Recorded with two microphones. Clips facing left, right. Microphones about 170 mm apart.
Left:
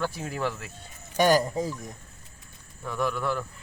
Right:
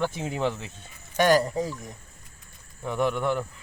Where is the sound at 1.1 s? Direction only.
15° left (ahead or behind).